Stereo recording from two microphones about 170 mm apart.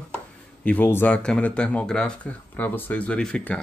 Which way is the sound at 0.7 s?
10° left (ahead or behind).